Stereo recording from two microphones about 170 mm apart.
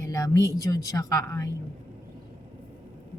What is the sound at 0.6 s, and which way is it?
Speech, 20° left (ahead or behind).